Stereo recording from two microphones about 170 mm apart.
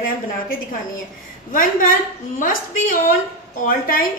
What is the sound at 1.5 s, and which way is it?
A woman's voice, 55° left (ahead or behind).